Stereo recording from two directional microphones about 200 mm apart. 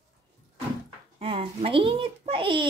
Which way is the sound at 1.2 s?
30° right (ahead or behind).